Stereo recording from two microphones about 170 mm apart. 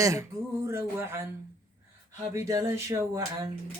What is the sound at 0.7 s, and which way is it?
Speech, 15° right (ahead or behind).